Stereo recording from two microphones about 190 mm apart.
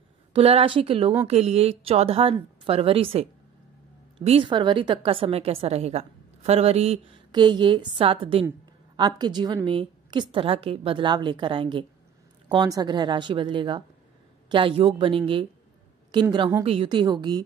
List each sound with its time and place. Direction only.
0.3 s a woman's voice: 30° right (ahead or behind)